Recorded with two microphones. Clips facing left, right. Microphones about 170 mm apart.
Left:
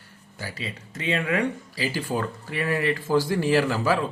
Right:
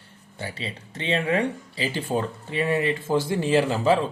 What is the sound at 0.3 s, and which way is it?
Speech, 30° right (ahead or behind).